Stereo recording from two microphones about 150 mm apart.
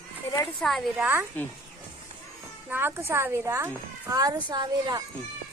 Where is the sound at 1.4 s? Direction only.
10° left (ahead or behind).